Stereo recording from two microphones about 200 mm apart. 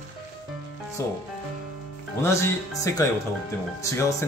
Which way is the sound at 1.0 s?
15° left (ahead or behind).